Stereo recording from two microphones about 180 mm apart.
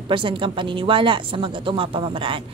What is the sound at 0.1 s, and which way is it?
A woman's voice, 30° right (ahead or behind).